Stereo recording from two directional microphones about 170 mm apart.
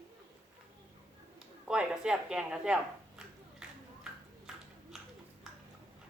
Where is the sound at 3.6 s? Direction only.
5° right (ahead or behind).